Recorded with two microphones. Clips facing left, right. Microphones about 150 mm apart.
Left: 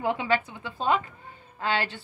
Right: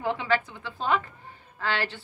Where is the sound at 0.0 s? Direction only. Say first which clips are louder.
Left 1 dB; 15° left (ahead or behind).